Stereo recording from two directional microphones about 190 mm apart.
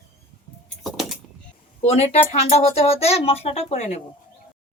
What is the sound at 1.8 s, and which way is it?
Speech, 35° left (ahead or behind).